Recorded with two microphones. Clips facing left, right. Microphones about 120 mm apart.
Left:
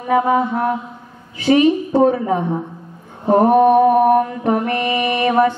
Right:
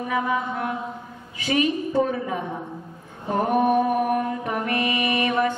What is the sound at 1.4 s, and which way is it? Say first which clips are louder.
Mantra: left 9 dB; 35° left (ahead or behind).